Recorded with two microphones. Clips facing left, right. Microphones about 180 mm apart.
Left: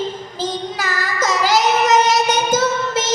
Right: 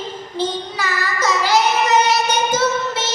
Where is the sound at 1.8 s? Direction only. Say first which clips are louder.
Left 2 dB; 45° left (ahead or behind).